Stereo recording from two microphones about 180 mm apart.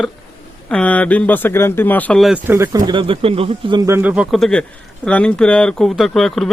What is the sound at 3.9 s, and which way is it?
Speech, 10° right (ahead or behind).